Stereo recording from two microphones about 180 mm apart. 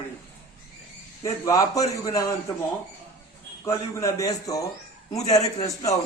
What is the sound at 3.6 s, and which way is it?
Speech, 15° left (ahead or behind).